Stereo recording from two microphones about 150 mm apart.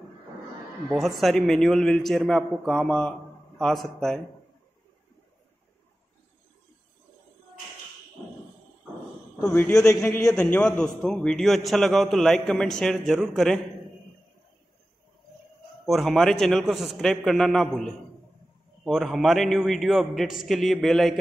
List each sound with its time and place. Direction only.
0.9 s a man's voice: centre (ahead or behind)
9.4 s a man's voice: 15° left (ahead or behind)
10.3 s a man's voice: 5° left (ahead or behind)
15.8 s a man's voice: centre (ahead or behind)
18.9 s a man's voice: centre (ahead or behind)